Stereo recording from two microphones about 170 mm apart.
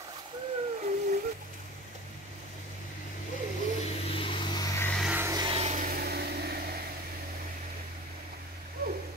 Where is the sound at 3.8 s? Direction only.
35° left (ahead or behind).